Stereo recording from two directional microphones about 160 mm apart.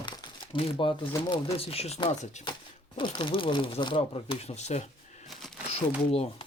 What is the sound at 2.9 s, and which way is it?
Speech, 30° left (ahead or behind).